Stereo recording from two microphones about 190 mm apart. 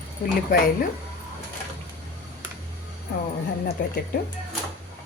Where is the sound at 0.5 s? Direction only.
45° left (ahead or behind).